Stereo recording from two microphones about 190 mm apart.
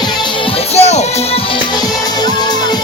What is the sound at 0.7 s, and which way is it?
Music, 35° left (ahead or behind).